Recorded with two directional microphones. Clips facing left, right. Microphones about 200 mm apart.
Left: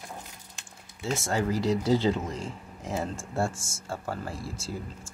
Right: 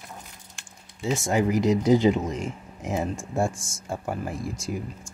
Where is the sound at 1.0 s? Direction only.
15° right (ahead or behind).